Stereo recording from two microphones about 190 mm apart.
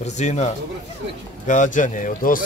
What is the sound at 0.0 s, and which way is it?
Speech, 35° left (ahead or behind).